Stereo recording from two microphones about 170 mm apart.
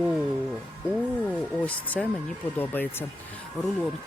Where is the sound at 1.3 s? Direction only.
10° left (ahead or behind).